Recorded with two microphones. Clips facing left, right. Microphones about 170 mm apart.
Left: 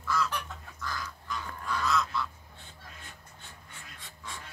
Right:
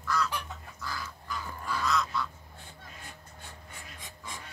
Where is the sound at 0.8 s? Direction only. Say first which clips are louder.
Left 1 dB; 10° right (ahead or behind).